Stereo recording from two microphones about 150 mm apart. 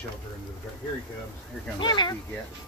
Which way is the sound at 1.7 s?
30° left (ahead or behind).